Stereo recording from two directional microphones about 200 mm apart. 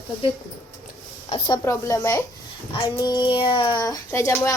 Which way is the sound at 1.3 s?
30° left (ahead or behind).